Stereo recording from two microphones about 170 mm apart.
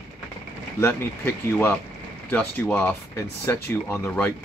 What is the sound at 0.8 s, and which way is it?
Speech, 15° left (ahead or behind).